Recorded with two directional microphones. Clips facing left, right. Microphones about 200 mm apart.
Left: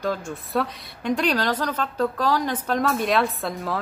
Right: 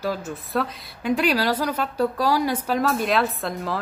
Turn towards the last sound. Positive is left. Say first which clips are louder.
# even
turn(degrees=0)  # may be behind; listen again after turning